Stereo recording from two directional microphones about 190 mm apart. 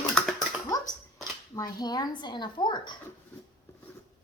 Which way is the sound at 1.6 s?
20° left (ahead or behind).